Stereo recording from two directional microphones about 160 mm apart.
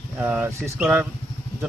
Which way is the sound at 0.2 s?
10° right (ahead or behind).